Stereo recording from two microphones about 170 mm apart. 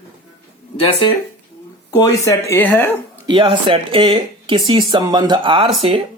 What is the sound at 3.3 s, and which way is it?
A woman's voice, 30° right (ahead or behind).